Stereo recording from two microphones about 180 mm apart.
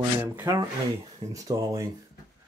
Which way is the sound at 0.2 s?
15° right (ahead or behind).